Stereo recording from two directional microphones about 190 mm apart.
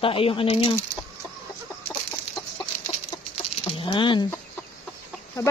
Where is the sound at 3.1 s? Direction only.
20° left (ahead or behind).